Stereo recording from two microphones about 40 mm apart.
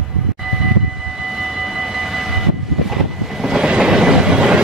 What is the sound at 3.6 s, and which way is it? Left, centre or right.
Train, right.